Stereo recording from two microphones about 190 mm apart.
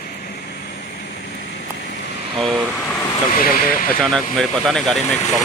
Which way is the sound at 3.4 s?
50° left (ahead or behind).